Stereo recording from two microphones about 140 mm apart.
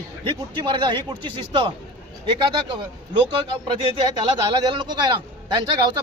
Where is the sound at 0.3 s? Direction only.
35° right (ahead or behind).